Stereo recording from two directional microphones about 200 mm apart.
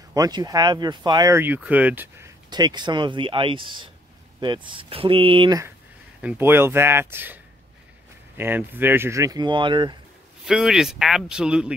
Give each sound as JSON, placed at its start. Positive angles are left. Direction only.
{"t": 0.1, "sound": "speech", "side_deg": -20}
{"t": 6.2, "sound": "speech", "side_deg": -10}
{"t": 8.4, "sound": "speech", "side_deg": -10}
{"t": 10.4, "sound": "speech", "side_deg": -5}